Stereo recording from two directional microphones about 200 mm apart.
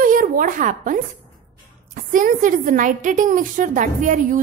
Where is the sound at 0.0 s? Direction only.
45° right (ahead or behind).